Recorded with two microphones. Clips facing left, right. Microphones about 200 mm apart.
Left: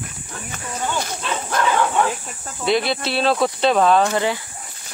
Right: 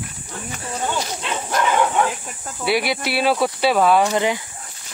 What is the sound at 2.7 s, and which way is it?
Speech, 10° right (ahead or behind).